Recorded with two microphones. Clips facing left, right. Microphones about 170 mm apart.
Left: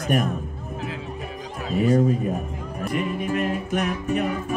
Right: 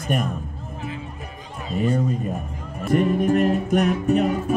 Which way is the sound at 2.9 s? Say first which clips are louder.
Right 7 dB; 45° right (ahead or behind).